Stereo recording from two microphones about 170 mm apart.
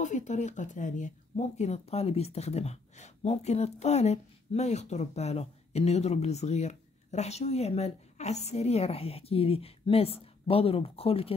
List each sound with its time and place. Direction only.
0.0 s speech: 45° left (ahead or behind)